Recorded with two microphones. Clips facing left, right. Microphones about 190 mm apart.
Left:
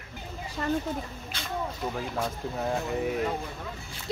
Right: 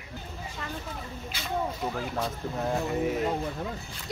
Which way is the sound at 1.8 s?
Centre (ahead or behind).